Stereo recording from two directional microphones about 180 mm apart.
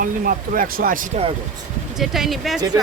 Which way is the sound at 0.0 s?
50° right (ahead or behind).